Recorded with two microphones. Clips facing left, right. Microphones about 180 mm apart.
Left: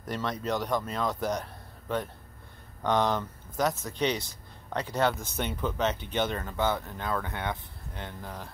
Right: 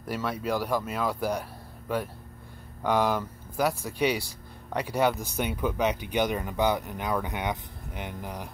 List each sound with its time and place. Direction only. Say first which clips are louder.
0.0 s speech: right 2 dB; 5° right (ahead or behind)